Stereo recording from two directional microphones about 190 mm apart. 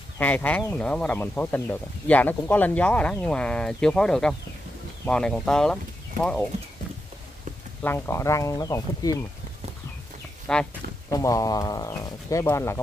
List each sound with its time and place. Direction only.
0.2 s speech: 10° left (ahead or behind)
7.8 s speech: 15° left (ahead or behind)
10.5 s speech: 5° left (ahead or behind)
11.1 s speech: 15° left (ahead or behind)